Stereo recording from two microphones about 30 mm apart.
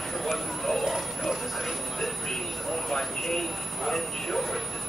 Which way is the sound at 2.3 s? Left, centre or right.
Centre.